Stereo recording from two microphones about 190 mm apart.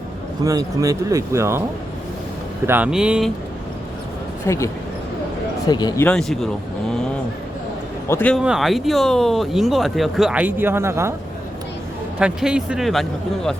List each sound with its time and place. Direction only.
0.4 s speech: 20° right (ahead or behind)
2.6 s speech: 10° right (ahead or behind)
4.4 s speech: 15° left (ahead or behind)
6.1 s speech: 5° left (ahead or behind)
8.0 s a man's voice: 10° left (ahead or behind)
8.4 s speech: centre (ahead or behind)
12.2 s speech: 5° right (ahead or behind)